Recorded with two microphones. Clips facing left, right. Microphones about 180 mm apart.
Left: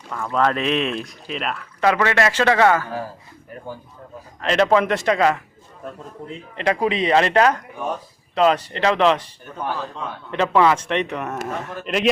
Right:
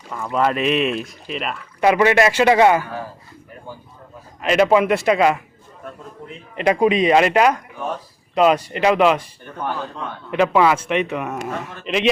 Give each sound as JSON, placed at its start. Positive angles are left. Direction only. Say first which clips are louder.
{"t": 0.1, "sound": "speech", "louder": "right 1 dB", "side_deg": -10}
{"t": 1.8, "sound": "a man's voice", "louder": "right 4 dB", "side_deg": -15}
{"t": 4.4, "sound": "a man's voice", "louder": "right 2 dB", "side_deg": -10}
{"t": 6.6, "sound": "a man's voice", "louder": "right 4 dB", "side_deg": -15}
{"t": 10.3, "sound": "a man's voice", "louder": "right 1 dB", "side_deg": -10}